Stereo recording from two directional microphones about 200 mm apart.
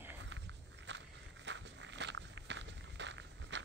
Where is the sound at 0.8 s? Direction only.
65° right (ahead or behind).